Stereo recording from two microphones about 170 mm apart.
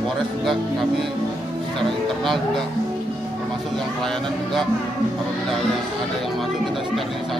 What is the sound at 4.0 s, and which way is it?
Music, centre (ahead or behind).